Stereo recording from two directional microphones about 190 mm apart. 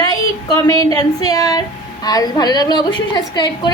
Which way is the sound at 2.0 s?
20° left (ahead or behind).